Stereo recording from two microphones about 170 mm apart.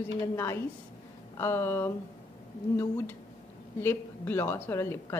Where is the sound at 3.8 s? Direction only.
15° left (ahead or behind).